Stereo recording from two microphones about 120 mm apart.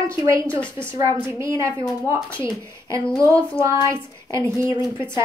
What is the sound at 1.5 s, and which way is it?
Speech, 25° right (ahead or behind).